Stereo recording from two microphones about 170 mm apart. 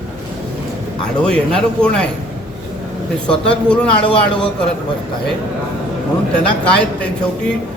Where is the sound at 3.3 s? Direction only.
5° left (ahead or behind).